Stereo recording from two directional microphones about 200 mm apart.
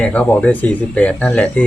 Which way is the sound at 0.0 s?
5° left (ahead or behind).